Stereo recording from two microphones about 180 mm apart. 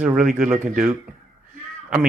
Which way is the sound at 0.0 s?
5° right (ahead or behind).